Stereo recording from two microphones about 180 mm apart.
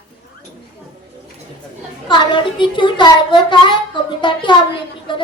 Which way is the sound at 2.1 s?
25° left (ahead or behind).